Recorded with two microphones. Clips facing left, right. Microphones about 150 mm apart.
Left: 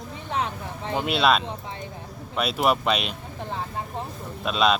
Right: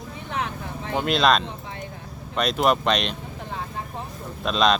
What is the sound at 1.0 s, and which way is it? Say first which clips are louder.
Speech: right 1 dB; 5° left (ahead or behind).